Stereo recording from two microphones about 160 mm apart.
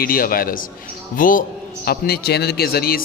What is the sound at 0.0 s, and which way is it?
A man's voice, 65° left (ahead or behind).